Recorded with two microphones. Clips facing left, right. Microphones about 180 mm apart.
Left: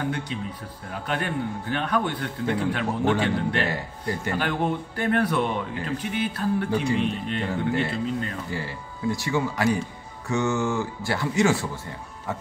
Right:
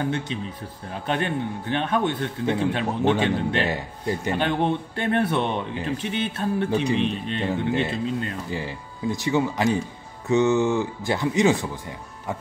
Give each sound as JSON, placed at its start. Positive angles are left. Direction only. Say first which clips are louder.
{"t": 1.0, "sound": "a man's voice", "louder": "right 2 dB", "side_deg": -25}